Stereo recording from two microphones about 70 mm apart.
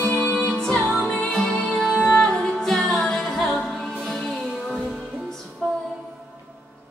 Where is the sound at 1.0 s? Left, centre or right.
Left.